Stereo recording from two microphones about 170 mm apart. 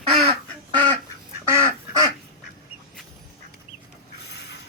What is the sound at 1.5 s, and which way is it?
Duck, 20° right (ahead or behind).